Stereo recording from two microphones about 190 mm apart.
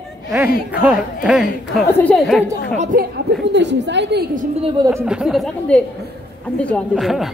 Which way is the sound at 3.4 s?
65° right (ahead or behind).